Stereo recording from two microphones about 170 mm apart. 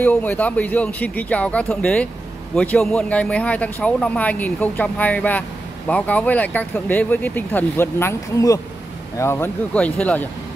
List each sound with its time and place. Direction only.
0.0 s speech: 10° left (ahead or behind)